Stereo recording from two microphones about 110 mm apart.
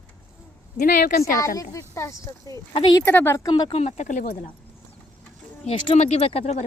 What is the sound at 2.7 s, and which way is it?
Speech, 60° left (ahead or behind).